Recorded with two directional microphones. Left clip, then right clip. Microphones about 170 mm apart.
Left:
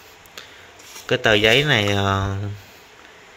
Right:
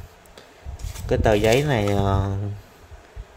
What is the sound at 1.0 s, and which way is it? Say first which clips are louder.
Speech: left 3 dB; 20° right (ahead or behind).